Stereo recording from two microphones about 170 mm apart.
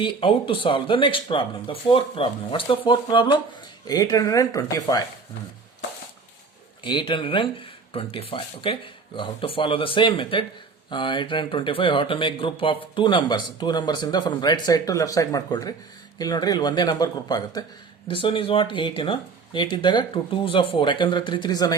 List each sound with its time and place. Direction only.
0.0 s speech: 30° left (ahead or behind)
6.8 s speech: 30° left (ahead or behind)